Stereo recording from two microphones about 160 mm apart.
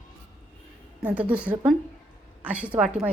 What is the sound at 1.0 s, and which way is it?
Speech, 10° right (ahead or behind).